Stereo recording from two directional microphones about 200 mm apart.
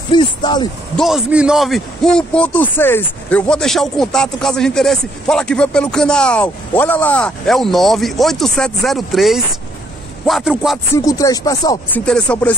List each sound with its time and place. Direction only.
0.1 s speech: 20° left (ahead or behind)
0.9 s a man's voice: centre (ahead or behind)
11.0 s speech: 15° left (ahead or behind)
12.0 s speech: 5° left (ahead or behind)